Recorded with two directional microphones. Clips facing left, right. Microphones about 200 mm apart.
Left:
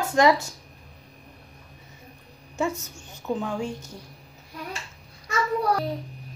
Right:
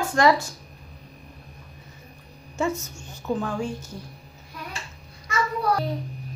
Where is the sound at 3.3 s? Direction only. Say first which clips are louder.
Right 1 dB; 20° left (ahead or behind).